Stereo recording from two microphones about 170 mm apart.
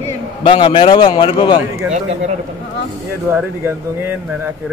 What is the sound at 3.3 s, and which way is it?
Speech, 10° right (ahead or behind).